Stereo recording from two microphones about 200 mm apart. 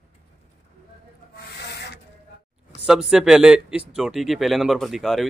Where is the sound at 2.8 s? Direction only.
5° right (ahead or behind).